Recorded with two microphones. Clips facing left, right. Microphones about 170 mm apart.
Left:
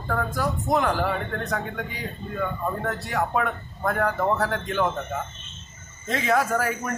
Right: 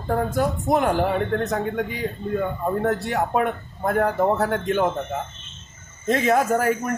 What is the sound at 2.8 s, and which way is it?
Speech, 30° right (ahead or behind).